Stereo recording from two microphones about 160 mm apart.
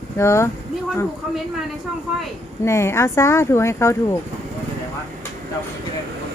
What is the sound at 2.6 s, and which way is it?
Speech, 15° left (ahead or behind).